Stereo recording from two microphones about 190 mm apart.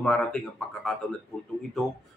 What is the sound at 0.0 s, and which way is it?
Speech, centre (ahead or behind).